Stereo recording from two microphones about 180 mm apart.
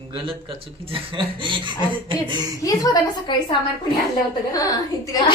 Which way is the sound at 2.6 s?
20° left (ahead or behind).